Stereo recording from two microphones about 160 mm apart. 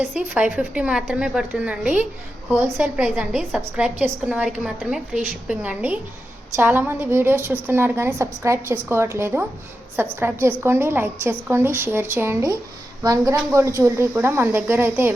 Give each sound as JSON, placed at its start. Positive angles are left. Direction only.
{"t": 0.0, "sound": "a woman's voice", "side_deg": -5}